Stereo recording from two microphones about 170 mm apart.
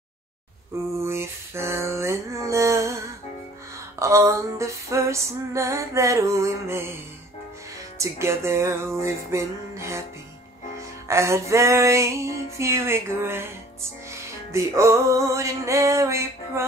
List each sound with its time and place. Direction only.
0.9 s a sound: 15° right (ahead or behind)
4.0 s music: 20° right (ahead or behind)
8.0 s music: 15° right (ahead or behind)
11.1 s music: 15° right (ahead or behind)